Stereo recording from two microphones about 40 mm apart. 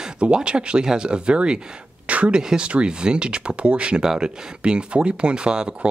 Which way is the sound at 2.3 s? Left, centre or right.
Right.